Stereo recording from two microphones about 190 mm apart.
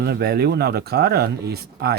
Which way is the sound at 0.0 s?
55° right (ahead or behind).